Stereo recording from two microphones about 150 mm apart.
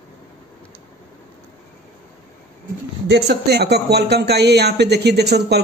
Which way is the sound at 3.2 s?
90° right.